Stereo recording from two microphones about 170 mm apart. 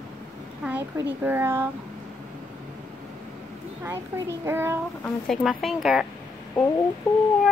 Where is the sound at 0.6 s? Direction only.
10° right (ahead or behind).